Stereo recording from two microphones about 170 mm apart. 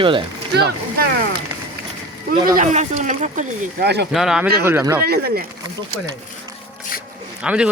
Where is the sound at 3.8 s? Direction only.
75° right (ahead or behind).